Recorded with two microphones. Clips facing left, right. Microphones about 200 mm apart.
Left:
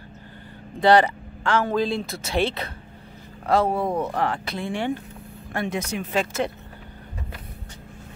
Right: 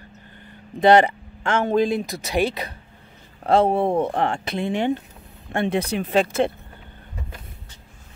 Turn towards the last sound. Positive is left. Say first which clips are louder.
# right 5 dB
turn(degrees=-30)  # may be behind; listen again after turning